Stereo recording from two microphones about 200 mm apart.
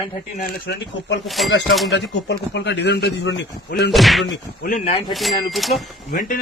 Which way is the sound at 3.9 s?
Centre (ahead or behind).